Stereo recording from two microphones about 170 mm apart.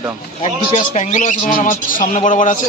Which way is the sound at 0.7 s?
45° left (ahead or behind).